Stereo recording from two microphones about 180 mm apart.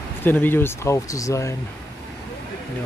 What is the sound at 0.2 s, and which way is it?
Speech, 10° left (ahead or behind).